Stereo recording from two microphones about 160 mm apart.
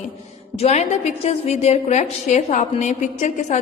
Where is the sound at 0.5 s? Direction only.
40° left (ahead or behind).